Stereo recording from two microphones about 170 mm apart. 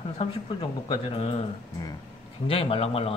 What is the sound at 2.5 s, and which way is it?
Speech, 35° left (ahead or behind).